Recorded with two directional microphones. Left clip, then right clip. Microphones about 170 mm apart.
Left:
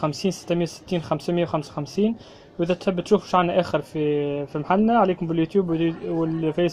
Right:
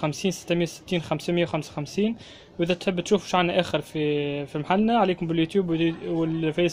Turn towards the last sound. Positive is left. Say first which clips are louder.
# left 2 dB
turn(degrees=-5)  # may be behind; listen again after turning